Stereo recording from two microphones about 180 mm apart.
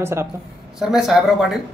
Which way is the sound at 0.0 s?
15° right (ahead or behind).